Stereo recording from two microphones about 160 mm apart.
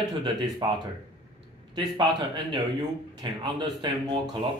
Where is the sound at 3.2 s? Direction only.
30° right (ahead or behind).